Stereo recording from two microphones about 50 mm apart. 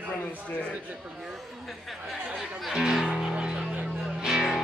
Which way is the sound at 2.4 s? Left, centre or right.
Centre.